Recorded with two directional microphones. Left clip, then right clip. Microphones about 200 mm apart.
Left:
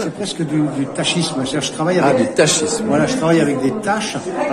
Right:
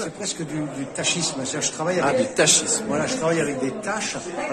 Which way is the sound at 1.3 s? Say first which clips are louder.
Left 6 dB; 15° right (ahead or behind).